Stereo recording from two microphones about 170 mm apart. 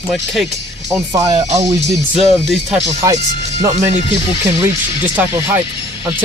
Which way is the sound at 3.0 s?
20° right (ahead or behind).